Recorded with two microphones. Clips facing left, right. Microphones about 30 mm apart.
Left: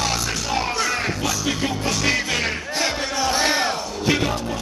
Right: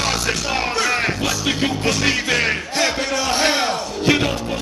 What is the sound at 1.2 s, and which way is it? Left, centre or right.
Music, right.